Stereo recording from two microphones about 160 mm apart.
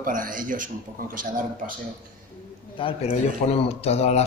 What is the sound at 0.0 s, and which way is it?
Speech, 60° right (ahead or behind).